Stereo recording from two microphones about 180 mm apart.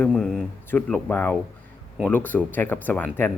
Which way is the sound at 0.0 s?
5° left (ahead or behind).